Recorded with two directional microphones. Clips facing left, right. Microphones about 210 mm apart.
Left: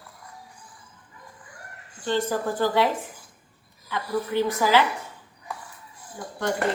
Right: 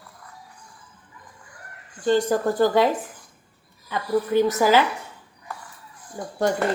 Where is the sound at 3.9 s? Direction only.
45° right (ahead or behind).